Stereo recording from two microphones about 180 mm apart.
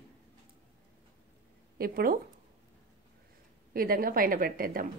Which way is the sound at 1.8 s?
55° right (ahead or behind).